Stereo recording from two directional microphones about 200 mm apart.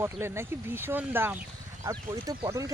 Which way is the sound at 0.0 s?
10° right (ahead or behind).